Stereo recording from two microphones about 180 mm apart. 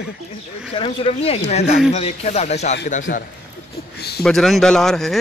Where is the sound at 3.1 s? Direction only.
65° left (ahead or behind).